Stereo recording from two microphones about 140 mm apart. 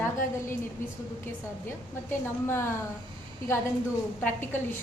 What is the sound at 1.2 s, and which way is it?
A woman's voice, 15° left (ahead or behind).